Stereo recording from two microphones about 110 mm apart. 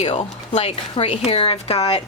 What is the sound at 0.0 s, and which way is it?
Speech, 70° left (ahead or behind).